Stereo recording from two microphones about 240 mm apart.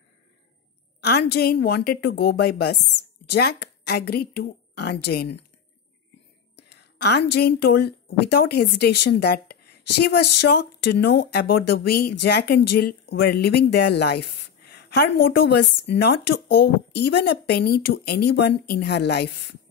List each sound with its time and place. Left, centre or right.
1.0 s a woman's voice: left
6.5 s whispering: left
7.3 s a woman's voice: left